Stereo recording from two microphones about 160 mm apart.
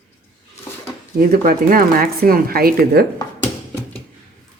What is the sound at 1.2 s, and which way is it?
Speech, 65° right (ahead or behind).